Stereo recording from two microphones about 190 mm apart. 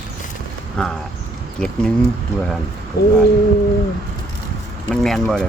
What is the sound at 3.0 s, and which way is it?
Speech, 55° left (ahead or behind).